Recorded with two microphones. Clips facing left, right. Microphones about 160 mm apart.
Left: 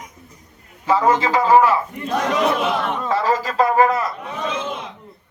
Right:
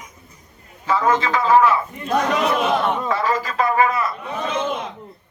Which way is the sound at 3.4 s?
35° left (ahead or behind).